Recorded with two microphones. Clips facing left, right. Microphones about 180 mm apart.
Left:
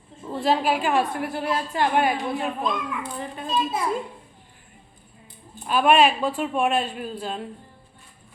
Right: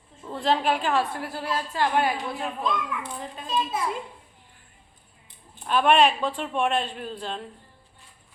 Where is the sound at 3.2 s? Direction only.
60° left (ahead or behind).